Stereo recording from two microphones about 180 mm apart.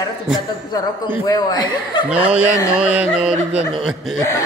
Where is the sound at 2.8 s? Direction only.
5° right (ahead or behind).